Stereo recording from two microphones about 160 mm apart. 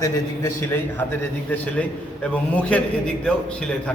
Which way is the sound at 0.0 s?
15° left (ahead or behind).